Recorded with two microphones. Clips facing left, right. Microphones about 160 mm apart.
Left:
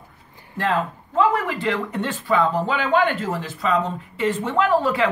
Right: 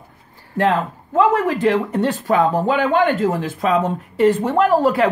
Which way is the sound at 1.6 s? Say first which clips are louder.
Right 7 dB; 35° right (ahead or behind).